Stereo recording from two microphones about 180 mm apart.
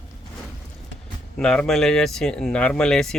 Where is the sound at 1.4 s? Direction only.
5° left (ahead or behind).